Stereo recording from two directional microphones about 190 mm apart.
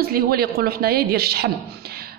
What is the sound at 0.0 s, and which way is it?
A woman's voice, 55° right (ahead or behind).